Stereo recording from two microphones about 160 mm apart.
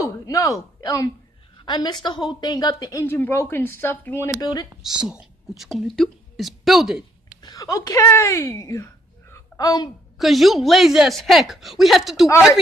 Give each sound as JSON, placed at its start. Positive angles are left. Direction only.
{"t": 0.0, "sound": "a woman's voice", "side_deg": 20}
{"t": 4.4, "sound": "speech", "side_deg": 25}
{"t": 4.8, "sound": "speech", "side_deg": -5}
{"t": 7.4, "sound": "speech", "side_deg": 20}
{"t": 10.1, "sound": "a woman's voice", "side_deg": 0}